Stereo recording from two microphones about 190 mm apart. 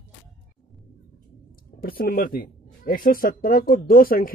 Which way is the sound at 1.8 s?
50° left (ahead or behind).